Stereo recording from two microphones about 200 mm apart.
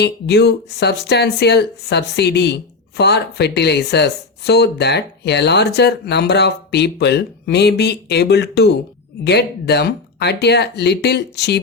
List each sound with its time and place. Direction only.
0.0 s speech: 55° left (ahead or behind)